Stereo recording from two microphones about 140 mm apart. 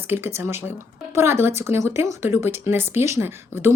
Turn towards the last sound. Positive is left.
turn(degrees=-15)  # may be behind; listen again after turning